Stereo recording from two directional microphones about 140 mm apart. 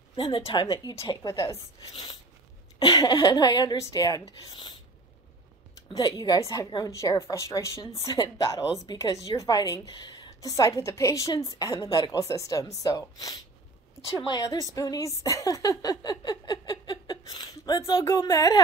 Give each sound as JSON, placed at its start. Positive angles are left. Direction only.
{"t": 0.1, "sound": "a woman's voice", "side_deg": 35}
{"t": 2.8, "sound": "speech", "side_deg": 30}
{"t": 5.9, "sound": "a woman's voice", "side_deg": 30}